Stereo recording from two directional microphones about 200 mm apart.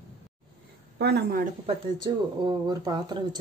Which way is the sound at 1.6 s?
20° right (ahead or behind).